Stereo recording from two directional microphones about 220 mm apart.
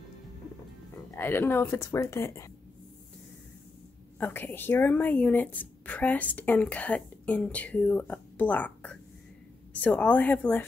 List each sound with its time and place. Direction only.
1.1 s speech: 10° left (ahead or behind)
4.2 s speech: 10° left (ahead or behind)